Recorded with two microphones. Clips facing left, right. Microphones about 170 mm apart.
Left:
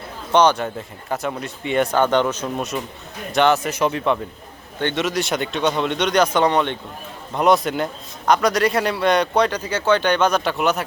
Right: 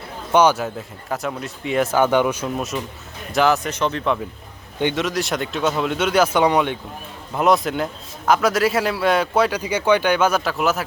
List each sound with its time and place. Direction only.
0.3 s a man's voice: 5° right (ahead or behind)